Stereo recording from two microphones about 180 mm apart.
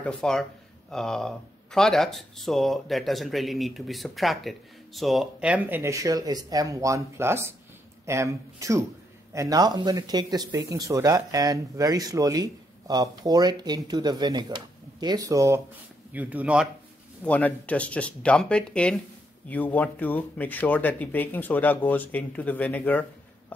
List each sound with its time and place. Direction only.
0.0 s speech: 5° left (ahead or behind)
17.2 s speech: 10° left (ahead or behind)